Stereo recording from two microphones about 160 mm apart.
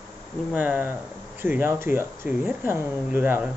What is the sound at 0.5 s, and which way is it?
Speech, 10° right (ahead or behind).